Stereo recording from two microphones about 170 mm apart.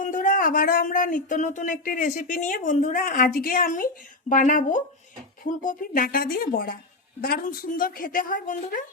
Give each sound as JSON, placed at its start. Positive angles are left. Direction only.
{"t": 0.0, "sound": "a woman's voice", "side_deg": 50}